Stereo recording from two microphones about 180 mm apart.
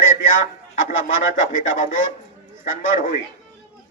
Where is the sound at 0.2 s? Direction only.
90° left.